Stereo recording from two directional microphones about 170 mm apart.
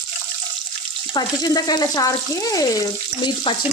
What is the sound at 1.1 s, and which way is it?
Speech, 25° left (ahead or behind).